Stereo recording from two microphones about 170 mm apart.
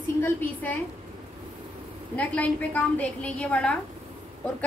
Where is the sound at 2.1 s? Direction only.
10° left (ahead or behind).